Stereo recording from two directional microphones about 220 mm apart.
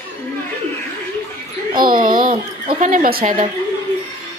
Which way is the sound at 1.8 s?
40° right (ahead or behind).